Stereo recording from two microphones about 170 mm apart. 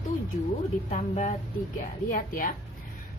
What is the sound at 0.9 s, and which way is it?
Speech, 40° left (ahead or behind).